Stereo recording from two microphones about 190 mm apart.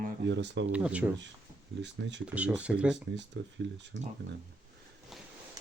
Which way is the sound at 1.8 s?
70° right (ahead or behind).